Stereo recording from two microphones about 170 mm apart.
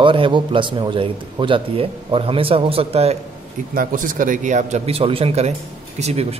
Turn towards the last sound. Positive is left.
turn(degrees=-35)  # may be behind; listen again after turning